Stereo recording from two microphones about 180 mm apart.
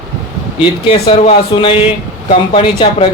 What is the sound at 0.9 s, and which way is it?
A man's voice, 30° left (ahead or behind).